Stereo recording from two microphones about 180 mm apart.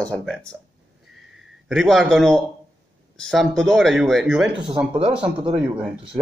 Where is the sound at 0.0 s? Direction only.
5° left (ahead or behind).